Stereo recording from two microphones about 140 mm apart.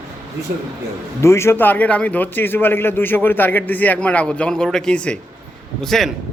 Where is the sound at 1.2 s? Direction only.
20° left (ahead or behind).